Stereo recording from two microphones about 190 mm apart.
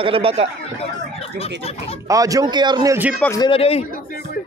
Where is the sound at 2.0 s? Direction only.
15° right (ahead or behind).